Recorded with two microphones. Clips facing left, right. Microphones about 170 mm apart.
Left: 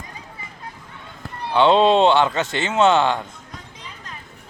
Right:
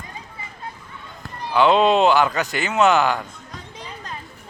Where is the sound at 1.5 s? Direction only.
30° left (ahead or behind).